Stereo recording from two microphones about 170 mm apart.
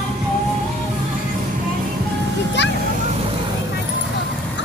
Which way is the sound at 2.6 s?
90° left.